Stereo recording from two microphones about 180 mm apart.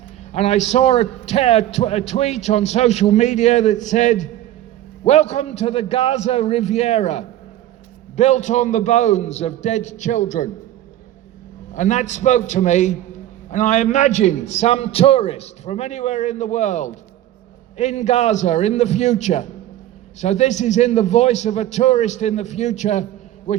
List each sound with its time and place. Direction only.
0.3 s a man's voice: 40° left (ahead or behind)
11.7 s a man's voice: 45° left (ahead or behind)